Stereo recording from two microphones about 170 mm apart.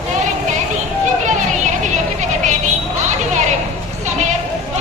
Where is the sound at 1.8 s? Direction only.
45° right (ahead or behind).